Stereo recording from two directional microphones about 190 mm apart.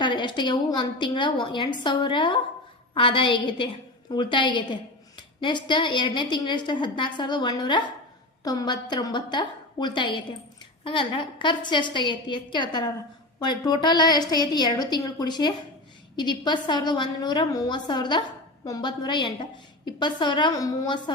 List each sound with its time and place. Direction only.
0.0 s a woman's voice: 25° left (ahead or behind)